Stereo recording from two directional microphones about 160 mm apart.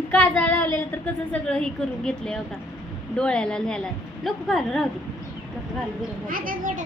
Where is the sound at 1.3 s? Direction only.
5° left (ahead or behind).